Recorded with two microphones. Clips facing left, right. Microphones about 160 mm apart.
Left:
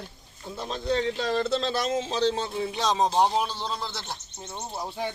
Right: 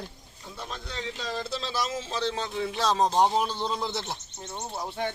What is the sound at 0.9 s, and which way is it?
Speech, 60° left (ahead or behind).